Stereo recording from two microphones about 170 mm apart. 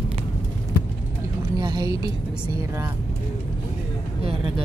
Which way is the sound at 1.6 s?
25° right (ahead or behind).